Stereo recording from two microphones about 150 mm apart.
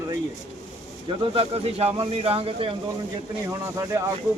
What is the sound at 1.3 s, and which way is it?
Speech, 40° right (ahead or behind).